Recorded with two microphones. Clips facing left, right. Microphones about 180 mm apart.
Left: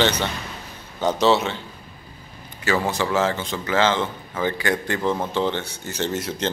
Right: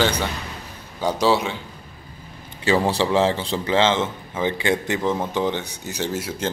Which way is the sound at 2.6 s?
30° right (ahead or behind).